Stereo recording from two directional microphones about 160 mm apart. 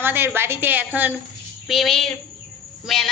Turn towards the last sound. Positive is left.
turn(degrees=0)  # may be behind; listen again after turning